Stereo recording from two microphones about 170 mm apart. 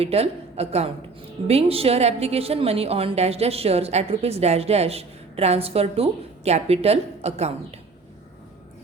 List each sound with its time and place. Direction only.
0.0 s a woman's voice: 35° right (ahead or behind)